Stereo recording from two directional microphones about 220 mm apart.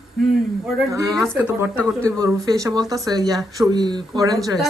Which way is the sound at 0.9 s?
15° right (ahead or behind).